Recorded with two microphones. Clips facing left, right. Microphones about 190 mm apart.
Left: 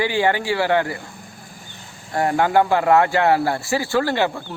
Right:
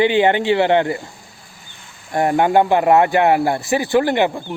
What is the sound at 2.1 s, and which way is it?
A man's voice, 20° right (ahead or behind).